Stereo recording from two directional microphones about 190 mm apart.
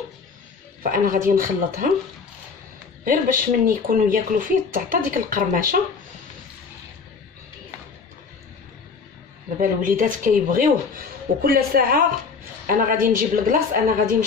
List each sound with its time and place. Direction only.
0.9 s speech: 45° right (ahead or behind)
3.1 s speech: 45° right (ahead or behind)
9.6 s speech: 45° right (ahead or behind)